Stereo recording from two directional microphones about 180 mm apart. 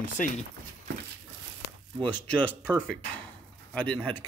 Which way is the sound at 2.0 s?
10° left (ahead or behind).